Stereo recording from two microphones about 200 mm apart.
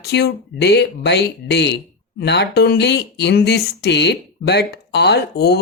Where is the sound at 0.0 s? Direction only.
55° left (ahead or behind).